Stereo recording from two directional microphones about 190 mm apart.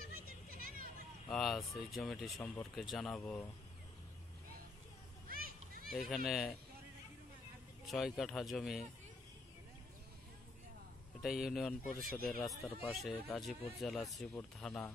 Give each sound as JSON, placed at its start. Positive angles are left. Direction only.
{"t": 0.0, "sound": "a sound", "side_deg": -50}
{"t": 1.3, "sound": "speech", "side_deg": 0}
{"t": 5.3, "sound": "children playing", "side_deg": -50}
{"t": 5.9, "sound": "speech", "side_deg": 0}
{"t": 7.8, "sound": "speech", "side_deg": 0}
{"t": 11.2, "sound": "speech", "side_deg": 0}